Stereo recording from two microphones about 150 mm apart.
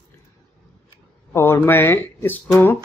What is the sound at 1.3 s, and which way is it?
Speech, 15° left (ahead or behind).